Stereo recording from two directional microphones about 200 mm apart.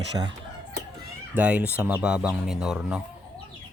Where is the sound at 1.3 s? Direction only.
5° right (ahead or behind).